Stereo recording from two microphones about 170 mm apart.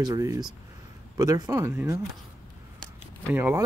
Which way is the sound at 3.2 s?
10° right (ahead or behind).